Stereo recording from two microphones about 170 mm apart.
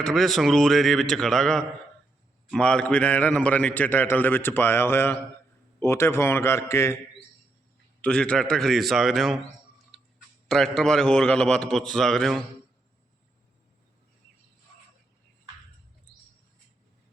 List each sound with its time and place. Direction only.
0.0 s a man's voice: centre (ahead or behind)
8.0 s a man's voice: 5° left (ahead or behind)
10.5 s a man's voice: 5° left (ahead or behind)